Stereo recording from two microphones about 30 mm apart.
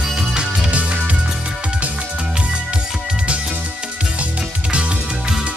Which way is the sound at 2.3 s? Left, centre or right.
Right.